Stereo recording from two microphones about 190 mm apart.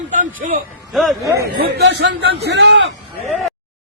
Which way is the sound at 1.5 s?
55° right (ahead or behind).